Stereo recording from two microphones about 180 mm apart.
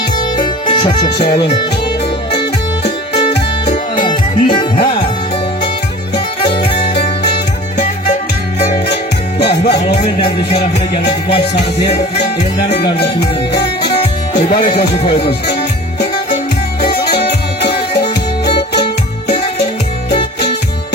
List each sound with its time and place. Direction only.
0.3 s music: 25° left (ahead or behind)
3.2 s music: 30° left (ahead or behind)
6.5 s music: 70° left (ahead or behind)
9.4 s music: 65° left (ahead or behind)
10.0 s music: 30° left (ahead or behind)
12.7 s music: 65° left (ahead or behind)
14.5 s music: 30° left (ahead or behind)
17.2 s music: 65° left (ahead or behind)